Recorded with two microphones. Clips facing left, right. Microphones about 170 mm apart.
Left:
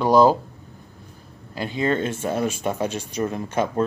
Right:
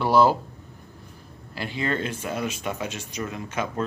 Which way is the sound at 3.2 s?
35° left (ahead or behind).